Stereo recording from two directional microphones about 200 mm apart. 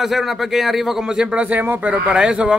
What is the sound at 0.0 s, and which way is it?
A man's voice, centre (ahead or behind).